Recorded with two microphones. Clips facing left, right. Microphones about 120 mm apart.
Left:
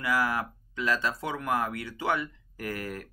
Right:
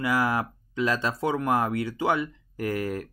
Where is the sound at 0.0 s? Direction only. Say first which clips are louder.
Right 3 dB; 25° right (ahead or behind).